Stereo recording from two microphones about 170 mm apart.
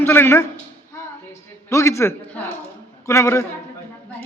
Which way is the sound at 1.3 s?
15° left (ahead or behind).